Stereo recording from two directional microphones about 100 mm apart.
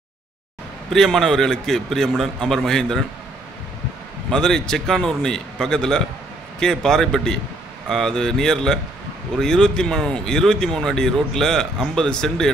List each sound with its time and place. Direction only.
0.8 s speech: centre (ahead or behind)
4.3 s speech: 5° left (ahead or behind)